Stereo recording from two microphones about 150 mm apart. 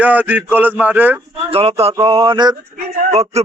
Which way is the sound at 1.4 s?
40° right (ahead or behind).